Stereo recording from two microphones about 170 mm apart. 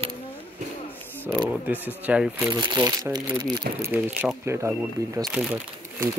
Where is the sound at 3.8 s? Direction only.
10° right (ahead or behind).